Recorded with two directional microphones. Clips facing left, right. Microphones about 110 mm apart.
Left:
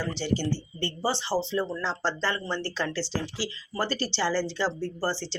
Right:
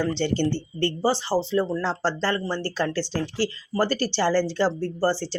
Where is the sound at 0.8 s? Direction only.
45° right (ahead or behind).